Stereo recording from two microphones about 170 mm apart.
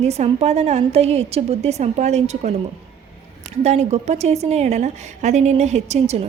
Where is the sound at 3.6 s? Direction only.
40° right (ahead or behind).